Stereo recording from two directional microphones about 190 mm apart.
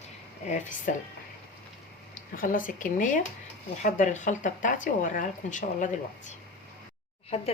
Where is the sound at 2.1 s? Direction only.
45° left (ahead or behind).